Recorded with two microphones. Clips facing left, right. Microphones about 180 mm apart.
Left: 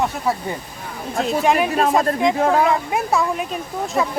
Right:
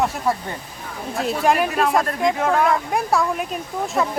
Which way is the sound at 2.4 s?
35° left (ahead or behind).